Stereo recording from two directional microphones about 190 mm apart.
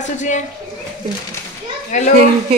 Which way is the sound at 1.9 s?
40° left (ahead or behind).